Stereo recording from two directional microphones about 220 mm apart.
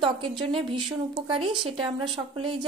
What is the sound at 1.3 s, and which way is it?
A woman's voice, 25° right (ahead or behind).